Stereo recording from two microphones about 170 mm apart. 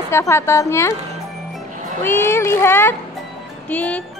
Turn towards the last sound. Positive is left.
turn(degrees=10)  # may be behind; listen again after turning